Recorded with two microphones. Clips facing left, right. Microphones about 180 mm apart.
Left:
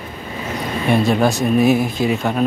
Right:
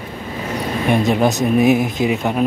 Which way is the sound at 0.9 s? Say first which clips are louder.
Even; 20° right (ahead or behind).